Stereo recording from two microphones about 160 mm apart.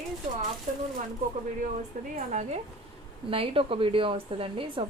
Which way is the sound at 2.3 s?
45° right (ahead or behind).